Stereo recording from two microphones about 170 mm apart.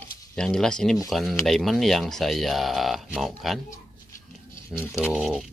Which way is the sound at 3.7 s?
15° left (ahead or behind).